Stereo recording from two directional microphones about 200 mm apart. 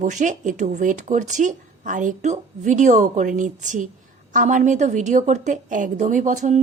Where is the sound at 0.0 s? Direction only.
40° right (ahead or behind).